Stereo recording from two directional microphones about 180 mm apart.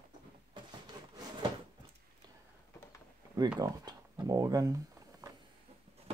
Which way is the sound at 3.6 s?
20° right (ahead or behind).